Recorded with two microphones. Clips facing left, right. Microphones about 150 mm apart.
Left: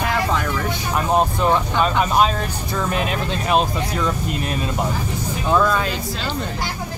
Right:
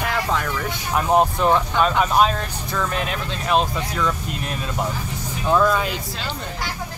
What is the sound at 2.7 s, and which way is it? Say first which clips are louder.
Speech: left 2 dB; 15° left (ahead or behind).